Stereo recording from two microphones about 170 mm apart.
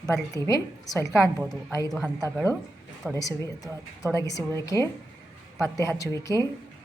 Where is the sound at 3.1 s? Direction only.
20° left (ahead or behind).